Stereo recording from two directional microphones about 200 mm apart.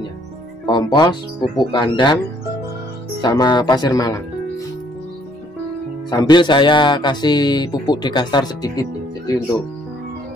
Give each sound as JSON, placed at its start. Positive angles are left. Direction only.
{"t": 0.7, "sound": "speech", "side_deg": 20}
{"t": 3.2, "sound": "speech", "side_deg": 20}
{"t": 6.0, "sound": "speech", "side_deg": 20}